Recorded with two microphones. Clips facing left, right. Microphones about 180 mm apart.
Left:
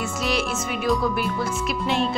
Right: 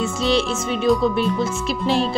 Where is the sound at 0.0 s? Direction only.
25° right (ahead or behind).